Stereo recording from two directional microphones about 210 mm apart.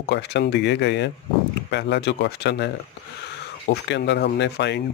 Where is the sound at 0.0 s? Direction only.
55° left (ahead or behind).